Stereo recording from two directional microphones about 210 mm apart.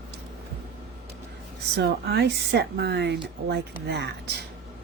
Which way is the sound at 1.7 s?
50° right (ahead or behind).